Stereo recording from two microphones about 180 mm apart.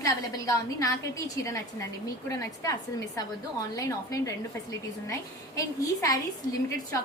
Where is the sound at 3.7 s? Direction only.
20° left (ahead or behind).